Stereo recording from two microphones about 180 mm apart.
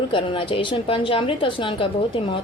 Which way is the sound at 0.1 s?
30° left (ahead or behind).